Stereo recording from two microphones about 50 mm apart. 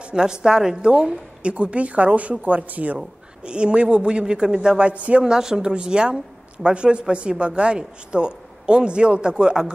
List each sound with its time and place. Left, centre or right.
0.0 s a woman's voice: centre
5.2 s speech: centre